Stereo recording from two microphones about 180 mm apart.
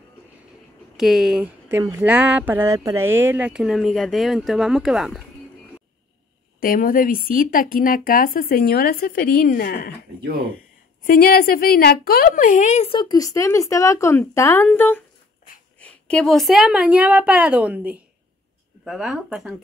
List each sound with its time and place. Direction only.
0.9 s speech: centre (ahead or behind)
6.6 s speech: 50° left (ahead or behind)
11.1 s a woman's voice: 55° left (ahead or behind); by 19.5 s 5° right (ahead or behind)